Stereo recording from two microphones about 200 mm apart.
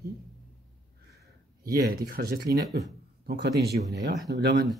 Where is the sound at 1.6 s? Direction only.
50° right (ahead or behind).